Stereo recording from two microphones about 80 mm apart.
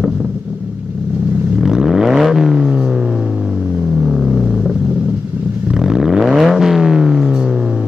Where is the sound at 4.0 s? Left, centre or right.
Centre.